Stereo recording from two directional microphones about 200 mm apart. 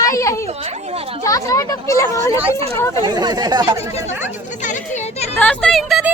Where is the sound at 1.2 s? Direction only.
15° left (ahead or behind).